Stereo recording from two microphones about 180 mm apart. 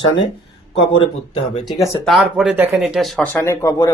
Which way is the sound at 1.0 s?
30° left (ahead or behind).